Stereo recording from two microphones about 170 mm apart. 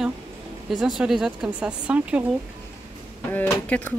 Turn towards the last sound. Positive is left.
turn(degrees=10)  # may be behind; listen again after turning